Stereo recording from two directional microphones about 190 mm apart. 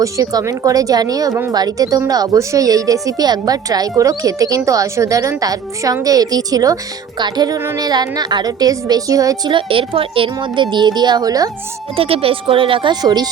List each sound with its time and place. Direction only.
0.0 s a woman's voice: 15° right (ahead or behind)
11.9 s a woman's voice: 30° right (ahead or behind)